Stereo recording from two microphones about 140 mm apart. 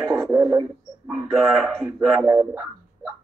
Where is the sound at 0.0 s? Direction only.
20° right (ahead or behind).